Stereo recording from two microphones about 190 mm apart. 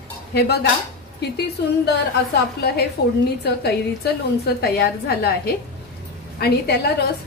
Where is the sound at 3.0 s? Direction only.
60° left (ahead or behind).